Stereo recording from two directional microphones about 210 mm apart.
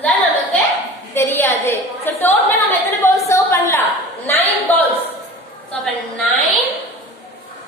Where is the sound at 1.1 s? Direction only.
10° left (ahead or behind).